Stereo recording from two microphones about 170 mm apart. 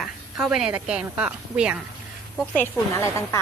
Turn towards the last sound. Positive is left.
turn(degrees=15)  # may be behind; listen again after turning